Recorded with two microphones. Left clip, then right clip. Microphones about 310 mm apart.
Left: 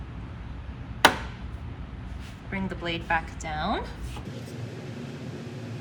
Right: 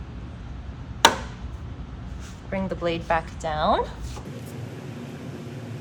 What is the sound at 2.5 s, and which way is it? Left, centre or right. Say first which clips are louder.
Speech: right 5 dB; right.